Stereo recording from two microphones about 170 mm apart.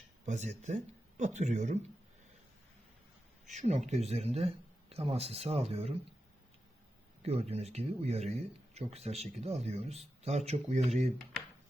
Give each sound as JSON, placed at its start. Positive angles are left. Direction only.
{"t": 0.3, "sound": "speech", "side_deg": -45}
{"t": 3.4, "sound": "speech", "side_deg": -45}
{"t": 7.2, "sound": "speech", "side_deg": -40}